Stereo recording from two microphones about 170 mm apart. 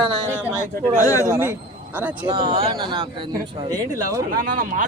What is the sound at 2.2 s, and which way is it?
Speech, 25° right (ahead or behind).